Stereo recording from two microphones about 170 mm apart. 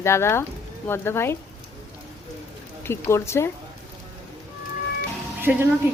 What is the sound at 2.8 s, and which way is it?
Speech, 15° left (ahead or behind).